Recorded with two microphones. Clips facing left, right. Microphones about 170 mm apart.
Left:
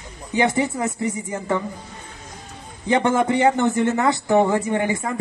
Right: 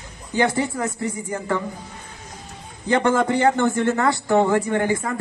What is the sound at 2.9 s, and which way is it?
A man's voice, 20° left (ahead or behind).